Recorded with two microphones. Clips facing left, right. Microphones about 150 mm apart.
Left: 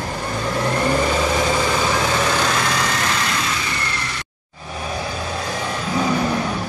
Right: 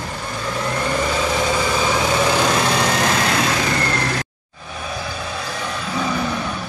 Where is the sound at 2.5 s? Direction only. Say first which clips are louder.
Right 3 dB; 30° right (ahead or behind); by 4.2 s 65° right (ahead or behind).